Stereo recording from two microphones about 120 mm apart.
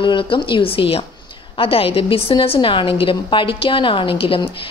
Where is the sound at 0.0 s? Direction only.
45° left (ahead or behind).